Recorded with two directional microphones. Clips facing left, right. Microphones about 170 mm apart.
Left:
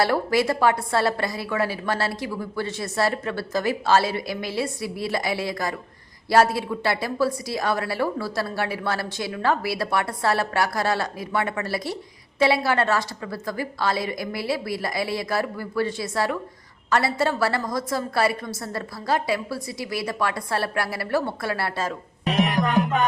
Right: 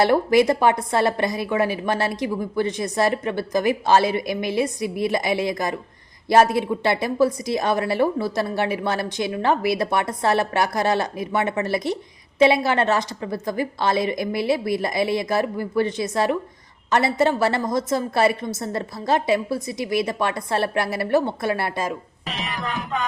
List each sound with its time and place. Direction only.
0.0 s a woman's voice: 20° right (ahead or behind)
22.3 s music: 55° left (ahead or behind)